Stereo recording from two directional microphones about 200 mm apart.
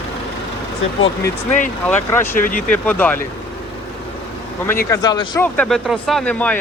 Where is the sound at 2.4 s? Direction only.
45° left (ahead or behind).